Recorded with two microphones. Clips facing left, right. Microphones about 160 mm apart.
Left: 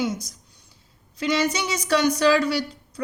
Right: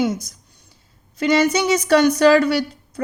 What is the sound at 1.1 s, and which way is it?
Speech, 50° right (ahead or behind).